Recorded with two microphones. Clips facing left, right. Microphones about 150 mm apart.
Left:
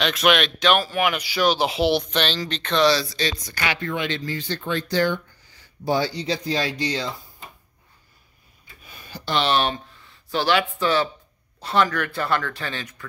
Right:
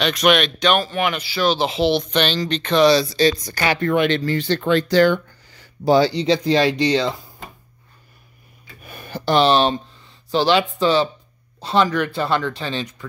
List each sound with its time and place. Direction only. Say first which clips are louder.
0.0 s speech: right 3 dB; centre (ahead or behind)
2.1 s speech: right 5 dB; centre (ahead or behind)
2.9 s speech: right 6 dB; 20° right (ahead or behind)
3.2 s speech: right 9 dB; 35° right (ahead or behind)
3.8 s speech: right 9 dB; 60° right (ahead or behind); by 7.4 s 85° right
8.8 s a sound: right 9 dB; 60° right (ahead or behind)
9.4 s speech: right 5 dB; 30° right (ahead or behind)